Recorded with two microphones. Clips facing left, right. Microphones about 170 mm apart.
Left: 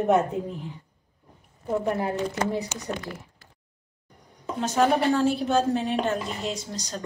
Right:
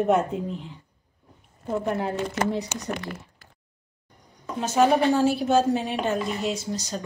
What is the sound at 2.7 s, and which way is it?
Speech, 65° right (ahead or behind).